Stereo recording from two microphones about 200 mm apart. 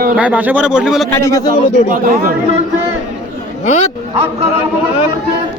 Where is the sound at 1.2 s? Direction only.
15° left (ahead or behind).